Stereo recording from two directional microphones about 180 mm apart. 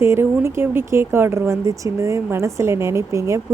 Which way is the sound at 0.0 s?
15° right (ahead or behind).